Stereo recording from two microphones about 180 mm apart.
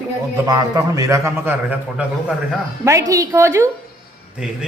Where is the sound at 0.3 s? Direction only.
20° right (ahead or behind).